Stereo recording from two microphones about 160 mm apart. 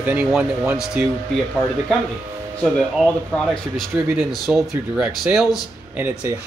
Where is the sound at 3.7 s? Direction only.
Centre (ahead or behind).